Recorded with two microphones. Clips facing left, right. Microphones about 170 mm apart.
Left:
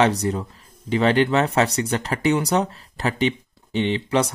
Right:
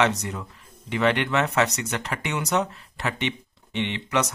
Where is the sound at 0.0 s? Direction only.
35° left (ahead or behind).